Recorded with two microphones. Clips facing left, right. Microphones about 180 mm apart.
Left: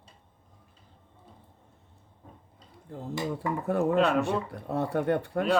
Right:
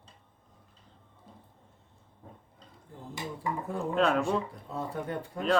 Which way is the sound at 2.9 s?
70° left (ahead or behind).